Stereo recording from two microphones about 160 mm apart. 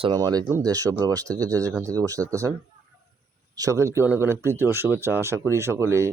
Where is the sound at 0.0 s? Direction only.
25° right (ahead or behind).